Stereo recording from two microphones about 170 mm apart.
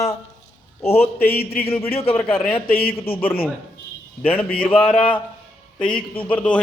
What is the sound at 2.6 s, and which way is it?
Speech, 60° left (ahead or behind).